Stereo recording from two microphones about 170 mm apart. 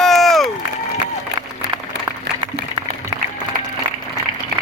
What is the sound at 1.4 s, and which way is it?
Applause, 25° right (ahead or behind).